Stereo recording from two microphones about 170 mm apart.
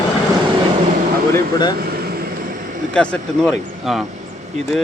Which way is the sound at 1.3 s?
25° left (ahead or behind).